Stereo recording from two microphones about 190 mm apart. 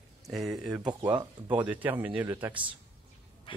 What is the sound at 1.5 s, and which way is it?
Speech, 10° right (ahead or behind).